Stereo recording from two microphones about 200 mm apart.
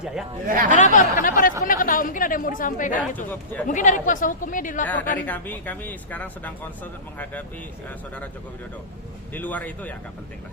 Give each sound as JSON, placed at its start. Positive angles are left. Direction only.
{"t": 0.4, "sound": "speech", "side_deg": -45}
{"t": 0.8, "sound": "a sound", "side_deg": 40}
{"t": 1.6, "sound": "speech", "side_deg": 45}
{"t": 5.2, "sound": "speech", "side_deg": 10}
{"t": 7.9, "sound": "speech", "side_deg": 10}
{"t": 9.3, "sound": "speech", "side_deg": 10}